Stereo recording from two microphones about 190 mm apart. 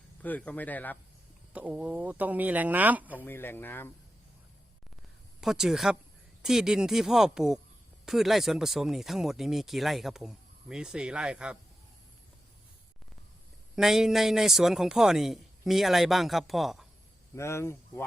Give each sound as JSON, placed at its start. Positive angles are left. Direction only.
{"t": 0.2, "sound": "speech", "side_deg": 10}
{"t": 1.5, "sound": "speech", "side_deg": -10}
{"t": 3.2, "sound": "speech", "side_deg": 10}
{"t": 5.4, "sound": "speech", "side_deg": 0}
{"t": 13.7, "sound": "speech", "side_deg": 0}
{"t": 17.3, "sound": "speech", "side_deg": 15}